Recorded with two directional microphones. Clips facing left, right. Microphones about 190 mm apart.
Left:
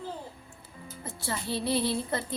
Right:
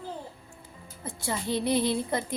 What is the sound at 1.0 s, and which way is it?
A woman's voice, 15° right (ahead or behind).